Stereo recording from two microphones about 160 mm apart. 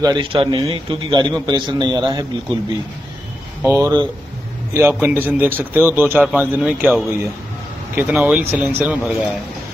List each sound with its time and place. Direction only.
0.0 s a man's voice: 30° right (ahead or behind)
3.6 s speech: 15° right (ahead or behind)
5.0 s speech: 10° right (ahead or behind)